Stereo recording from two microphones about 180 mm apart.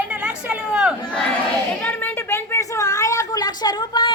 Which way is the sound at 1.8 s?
10° left (ahead or behind).